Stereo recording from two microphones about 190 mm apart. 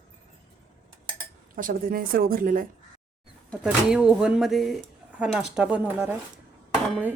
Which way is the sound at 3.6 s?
5° right (ahead or behind).